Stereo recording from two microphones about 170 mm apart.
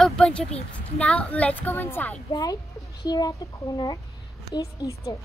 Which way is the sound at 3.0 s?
25° left (ahead or behind).